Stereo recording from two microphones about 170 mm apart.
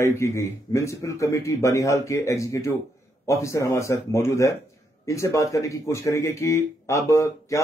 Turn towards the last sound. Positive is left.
turn(degrees=15)  # may be behind; listen again after turning